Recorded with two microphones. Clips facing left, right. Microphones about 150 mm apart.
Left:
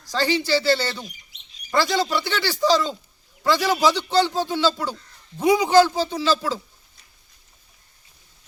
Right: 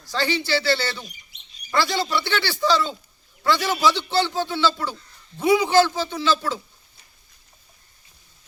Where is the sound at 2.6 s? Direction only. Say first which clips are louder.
Left 2 dB; 40° left (ahead or behind).